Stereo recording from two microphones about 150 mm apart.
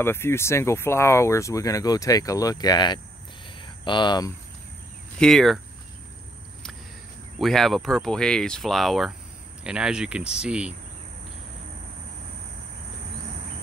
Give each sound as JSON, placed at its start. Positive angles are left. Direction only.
{"t": 0.0, "sound": "speech", "side_deg": 15}
{"t": 3.4, "sound": "a sound", "side_deg": 30}
{"t": 5.2, "sound": "speech", "side_deg": 0}
{"t": 7.3, "sound": "speech", "side_deg": 0}